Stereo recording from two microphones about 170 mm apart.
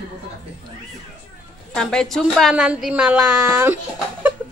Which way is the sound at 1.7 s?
5° left (ahead or behind).